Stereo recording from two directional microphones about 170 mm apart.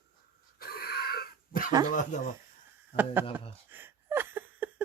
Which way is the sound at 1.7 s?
20° right (ahead or behind).